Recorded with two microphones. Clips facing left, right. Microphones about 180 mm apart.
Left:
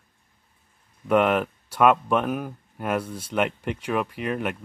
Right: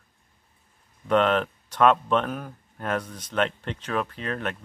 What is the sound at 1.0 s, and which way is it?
Speech, 10° left (ahead or behind).